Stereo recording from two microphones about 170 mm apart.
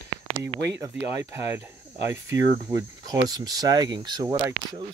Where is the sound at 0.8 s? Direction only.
15° right (ahead or behind).